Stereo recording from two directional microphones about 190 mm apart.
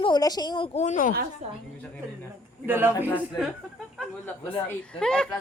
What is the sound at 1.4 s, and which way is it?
Speech, 35° right (ahead or behind).